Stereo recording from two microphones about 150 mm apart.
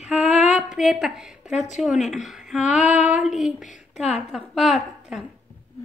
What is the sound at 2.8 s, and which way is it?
Female singing, 50° left (ahead or behind).